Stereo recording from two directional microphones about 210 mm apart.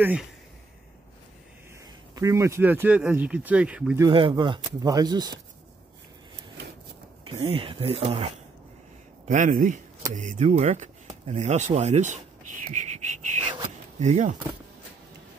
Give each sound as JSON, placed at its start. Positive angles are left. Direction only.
{"t": 0.0, "sound": "speech", "side_deg": -5}
{"t": 2.1, "sound": "speech", "side_deg": -15}
{"t": 4.0, "sound": "speech", "side_deg": -25}
{"t": 7.2, "sound": "speech", "side_deg": -25}
{"t": 9.3, "sound": "a man's voice", "side_deg": -40}